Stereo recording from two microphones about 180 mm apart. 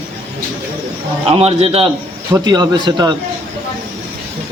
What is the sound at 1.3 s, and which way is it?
Speech, 35° right (ahead or behind).